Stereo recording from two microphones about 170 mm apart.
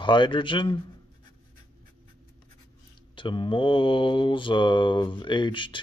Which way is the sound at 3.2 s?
30° left (ahead or behind).